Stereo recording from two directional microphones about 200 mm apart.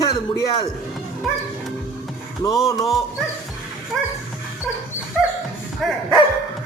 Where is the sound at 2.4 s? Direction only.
20° left (ahead or behind).